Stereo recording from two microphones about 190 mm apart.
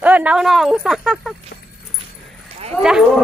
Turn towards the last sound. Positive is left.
turn(degrees=0)  # may be behind; listen again after turning